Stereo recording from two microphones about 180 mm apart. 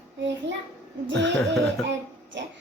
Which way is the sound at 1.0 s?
80° right.